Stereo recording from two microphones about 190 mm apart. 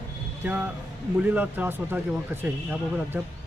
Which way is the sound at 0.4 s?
5° right (ahead or behind).